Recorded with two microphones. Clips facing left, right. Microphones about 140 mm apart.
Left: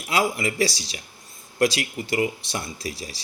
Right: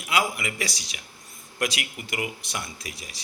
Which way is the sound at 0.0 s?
30° left (ahead or behind).